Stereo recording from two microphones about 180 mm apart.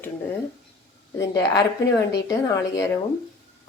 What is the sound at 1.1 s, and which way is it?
A woman's voice, 20° left (ahead or behind).